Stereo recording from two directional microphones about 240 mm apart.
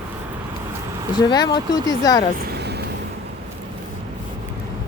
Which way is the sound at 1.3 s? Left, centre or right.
Centre.